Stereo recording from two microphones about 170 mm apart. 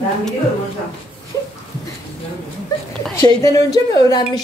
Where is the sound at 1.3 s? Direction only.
20° left (ahead or behind).